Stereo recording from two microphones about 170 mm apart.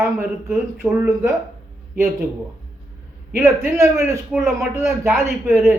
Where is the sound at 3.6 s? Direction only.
15° right (ahead or behind).